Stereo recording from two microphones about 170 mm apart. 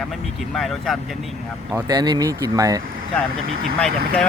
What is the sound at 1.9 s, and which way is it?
Speech, 25° right (ahead or behind).